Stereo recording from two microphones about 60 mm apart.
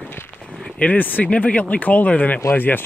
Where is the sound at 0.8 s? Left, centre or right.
Left.